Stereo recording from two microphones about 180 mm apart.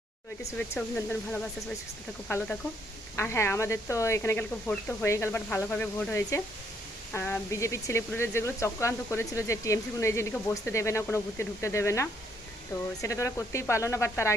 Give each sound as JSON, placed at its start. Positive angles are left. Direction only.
{"t": 0.8, "sound": "speech", "side_deg": 10}